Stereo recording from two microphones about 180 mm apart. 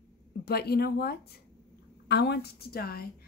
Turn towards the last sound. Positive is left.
turn(degrees=60)  # may be behind; listen again after turning